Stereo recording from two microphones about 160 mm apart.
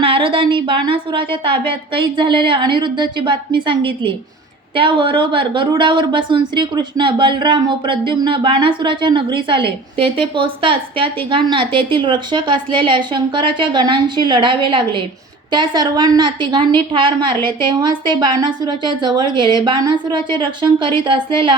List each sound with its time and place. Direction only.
0.0 s a woman's voice: 35° right (ahead or behind)